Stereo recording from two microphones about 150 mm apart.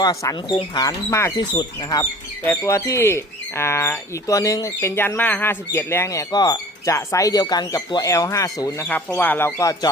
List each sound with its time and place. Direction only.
0.0 s speech: 20° left (ahead or behind)
2.4 s speech: 15° left (ahead or behind)
8.9 s speech: 10° left (ahead or behind)